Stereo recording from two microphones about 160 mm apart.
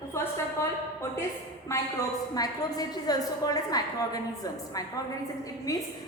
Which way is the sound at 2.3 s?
25° left (ahead or behind).